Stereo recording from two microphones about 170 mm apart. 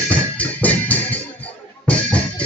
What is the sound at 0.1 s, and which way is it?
Music, 10° left (ahead or behind).